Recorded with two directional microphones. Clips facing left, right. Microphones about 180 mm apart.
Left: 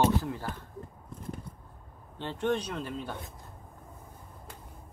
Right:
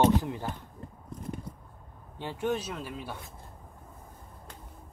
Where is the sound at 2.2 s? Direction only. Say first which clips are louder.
Left 1 dB; 10° right (ahead or behind).